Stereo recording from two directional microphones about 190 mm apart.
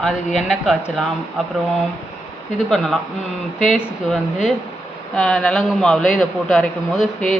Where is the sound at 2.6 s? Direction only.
Centre (ahead or behind).